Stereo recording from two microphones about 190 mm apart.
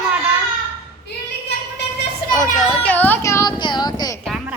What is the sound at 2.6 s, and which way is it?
Speech, 5° left (ahead or behind).